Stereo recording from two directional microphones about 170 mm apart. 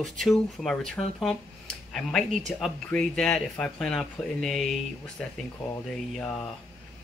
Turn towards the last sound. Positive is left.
turn(degrees=5)  # may be behind; listen again after turning